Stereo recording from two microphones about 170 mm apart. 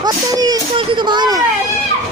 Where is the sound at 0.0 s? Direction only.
20° right (ahead or behind).